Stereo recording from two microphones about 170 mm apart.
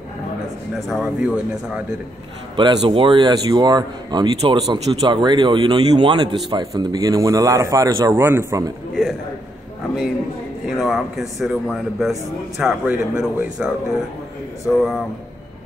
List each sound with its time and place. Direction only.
0.7 s a man's voice: centre (ahead or behind)
2.5 s speech: 25° right (ahead or behind)
10.8 s a man's voice: centre (ahead or behind)
14.7 s a man's voice: centre (ahead or behind)